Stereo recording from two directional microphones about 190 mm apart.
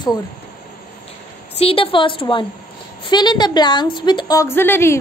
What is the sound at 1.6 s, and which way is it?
A woman's voice, 30° left (ahead or behind).